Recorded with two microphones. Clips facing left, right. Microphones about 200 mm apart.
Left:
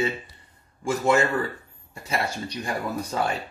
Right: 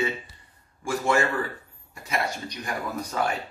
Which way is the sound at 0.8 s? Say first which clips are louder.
Left 3 dB; 20° left (ahead or behind).